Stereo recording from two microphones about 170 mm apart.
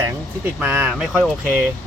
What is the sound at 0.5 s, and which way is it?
Speech, 10° right (ahead or behind).